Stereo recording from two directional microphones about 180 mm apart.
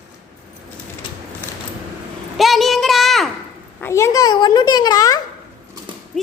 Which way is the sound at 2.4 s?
Centre (ahead or behind).